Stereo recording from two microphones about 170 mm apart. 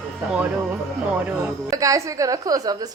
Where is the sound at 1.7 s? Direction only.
20° right (ahead or behind).